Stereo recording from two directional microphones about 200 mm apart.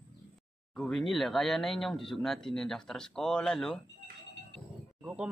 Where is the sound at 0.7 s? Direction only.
Centre (ahead or behind).